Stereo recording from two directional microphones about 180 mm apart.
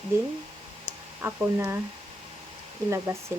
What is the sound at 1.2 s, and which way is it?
Speech, 10° right (ahead or behind).